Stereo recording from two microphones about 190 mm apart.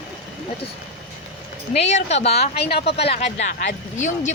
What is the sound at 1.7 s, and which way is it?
Speech, 35° left (ahead or behind).